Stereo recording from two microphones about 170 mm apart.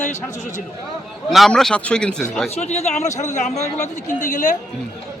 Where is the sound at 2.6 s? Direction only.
40° left (ahead or behind).